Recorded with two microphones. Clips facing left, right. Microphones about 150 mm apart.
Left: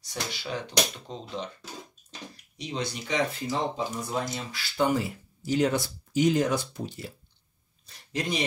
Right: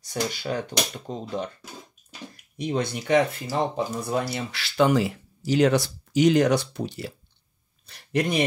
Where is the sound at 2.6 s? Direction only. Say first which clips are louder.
Right 6 dB; 55° right (ahead or behind).